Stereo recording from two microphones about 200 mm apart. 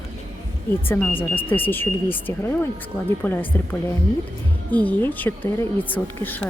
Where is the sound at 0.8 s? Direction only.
10° left (ahead or behind).